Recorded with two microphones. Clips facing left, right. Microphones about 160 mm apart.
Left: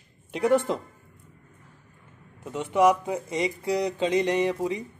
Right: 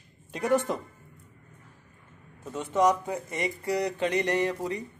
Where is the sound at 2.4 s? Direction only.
15° left (ahead or behind).